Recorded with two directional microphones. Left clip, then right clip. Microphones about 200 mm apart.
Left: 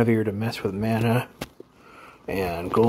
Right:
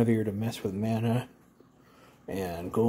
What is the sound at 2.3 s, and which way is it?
Speech, 10° left (ahead or behind).